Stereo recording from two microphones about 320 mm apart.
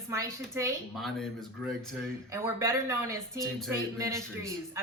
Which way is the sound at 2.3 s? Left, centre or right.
Centre.